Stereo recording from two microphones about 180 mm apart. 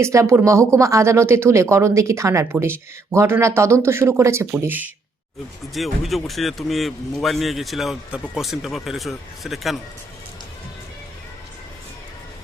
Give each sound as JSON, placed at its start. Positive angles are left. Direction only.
{"t": 0.0, "sound": "speech", "side_deg": -15}